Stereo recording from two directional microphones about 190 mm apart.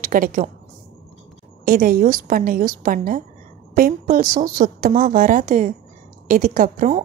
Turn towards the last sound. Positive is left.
turn(degrees=-40)  # may be behind; listen again after turning